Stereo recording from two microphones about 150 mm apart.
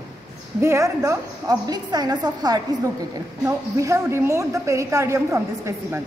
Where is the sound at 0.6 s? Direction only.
20° right (ahead or behind).